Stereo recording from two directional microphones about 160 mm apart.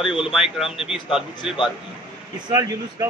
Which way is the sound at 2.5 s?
20° right (ahead or behind).